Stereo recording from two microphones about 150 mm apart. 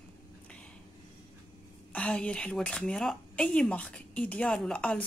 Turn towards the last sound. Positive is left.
turn(degrees=5)  # may be behind; listen again after turning